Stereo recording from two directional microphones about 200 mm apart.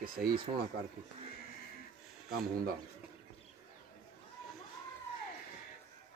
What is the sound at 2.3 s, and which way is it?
Speech, 50° right (ahead or behind).